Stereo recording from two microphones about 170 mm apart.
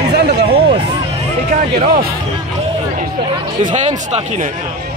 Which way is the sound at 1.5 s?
55° right (ahead or behind).